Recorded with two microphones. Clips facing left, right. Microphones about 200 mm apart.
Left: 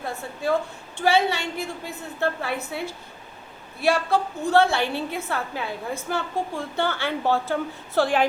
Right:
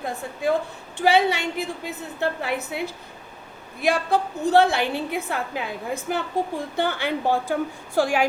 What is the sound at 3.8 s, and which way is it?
A woman's voice, 15° right (ahead or behind).